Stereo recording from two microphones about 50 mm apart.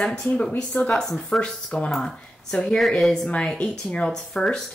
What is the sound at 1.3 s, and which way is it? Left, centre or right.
Speech, centre.